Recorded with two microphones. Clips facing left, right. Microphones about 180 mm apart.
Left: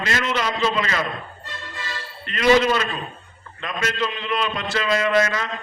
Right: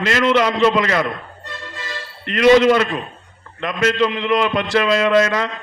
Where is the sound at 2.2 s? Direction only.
70° right (ahead or behind).